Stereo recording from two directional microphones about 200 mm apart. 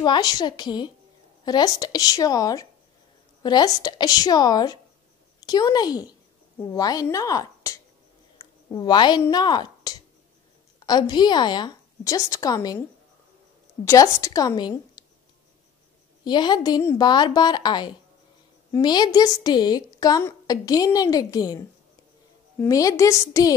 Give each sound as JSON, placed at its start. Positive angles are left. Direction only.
{"t": 0.0, "sound": "a woman's voice", "side_deg": 20}
{"t": 13.8, "sound": "a woman's voice", "side_deg": 15}
{"t": 16.3, "sound": "a woman's voice", "side_deg": 20}